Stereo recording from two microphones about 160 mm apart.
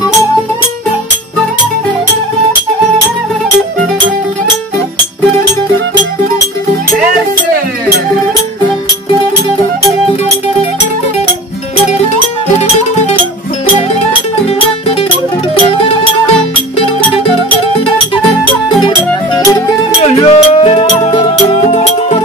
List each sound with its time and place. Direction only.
18.9 s music: 25° left (ahead or behind)
20.0 s music: 35° left (ahead or behind)